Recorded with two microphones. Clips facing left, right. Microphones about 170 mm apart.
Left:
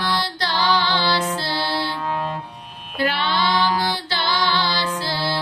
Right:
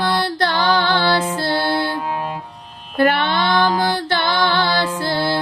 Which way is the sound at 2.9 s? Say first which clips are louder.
Right 6 dB; 50° right (ahead or behind).